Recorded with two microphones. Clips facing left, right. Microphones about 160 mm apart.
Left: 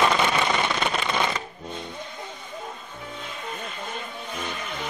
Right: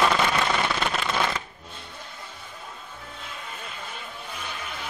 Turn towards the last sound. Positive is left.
turn(degrees=-5)  # may be behind; listen again after turning